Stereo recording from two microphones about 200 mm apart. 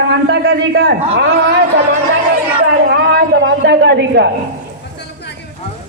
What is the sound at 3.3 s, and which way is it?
Speech, 60° right (ahead or behind).